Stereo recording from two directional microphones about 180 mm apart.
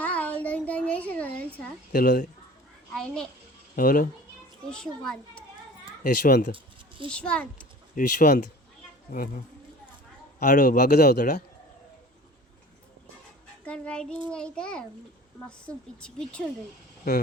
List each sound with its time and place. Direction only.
0.0 s a sound: 5° left (ahead or behind)
1.9 s a child's voice: 50° left (ahead or behind)
2.9 s a child's voice: 5° left (ahead or behind)
3.8 s a child's voice: 50° left (ahead or behind)
4.7 s a woman's voice: 5° left (ahead or behind)
6.0 s a child's voice: 50° left (ahead or behind)
6.5 s a sound: 30° right (ahead or behind)
7.1 s a woman's voice: 5° left (ahead or behind)
7.9 s a child's voice: 45° left (ahead or behind)
10.4 s a child's voice: 45° left (ahead or behind)
13.7 s a woman's voice: 5° left (ahead or behind)